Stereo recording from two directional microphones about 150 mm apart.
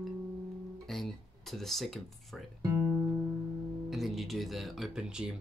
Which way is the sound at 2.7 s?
10° right (ahead or behind).